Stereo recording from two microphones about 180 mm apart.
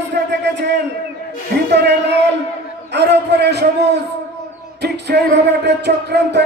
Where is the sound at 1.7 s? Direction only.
70° right (ahead or behind).